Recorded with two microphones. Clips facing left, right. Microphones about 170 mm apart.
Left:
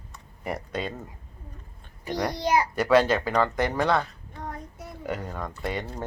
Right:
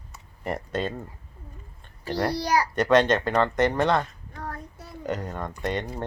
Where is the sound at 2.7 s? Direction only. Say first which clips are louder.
Right 2 dB; 5° left (ahead or behind).